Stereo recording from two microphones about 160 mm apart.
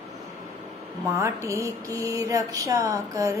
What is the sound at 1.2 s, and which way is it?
Mantra, 20° right (ahead or behind).